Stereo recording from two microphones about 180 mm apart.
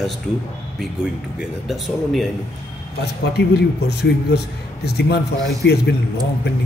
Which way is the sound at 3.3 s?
65° left (ahead or behind).